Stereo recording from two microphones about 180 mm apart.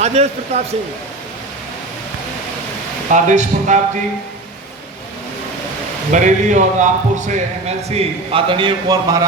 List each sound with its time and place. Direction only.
0.0 s a man's voice: 35° right (ahead or behind)
3.1 s speech: 45° right (ahead or behind)
6.1 s a man's voice: 45° right (ahead or behind); by 9.2 s 20° right (ahead or behind)